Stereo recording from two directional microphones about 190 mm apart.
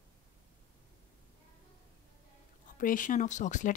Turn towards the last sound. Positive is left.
turn(degrees=40)  # may be behind; listen again after turning